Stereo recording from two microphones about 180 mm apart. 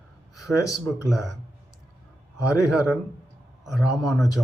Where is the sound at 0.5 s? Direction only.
20° left (ahead or behind).